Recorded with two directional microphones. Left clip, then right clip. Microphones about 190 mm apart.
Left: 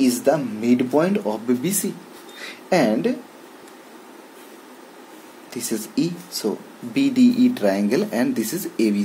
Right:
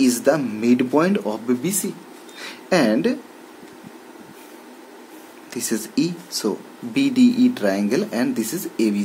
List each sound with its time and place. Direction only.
0.0 s speech: 20° right (ahead or behind); by 2.0 s centre (ahead or behind)
2.3 s a sound: 10° right (ahead or behind)
5.5 s speech: 15° right (ahead or behind); by 9.0 s centre (ahead or behind)